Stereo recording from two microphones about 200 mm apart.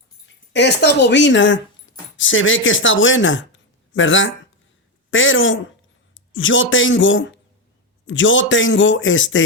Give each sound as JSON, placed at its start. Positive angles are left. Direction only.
{"t": 0.5, "sound": "a man's voice", "side_deg": 60}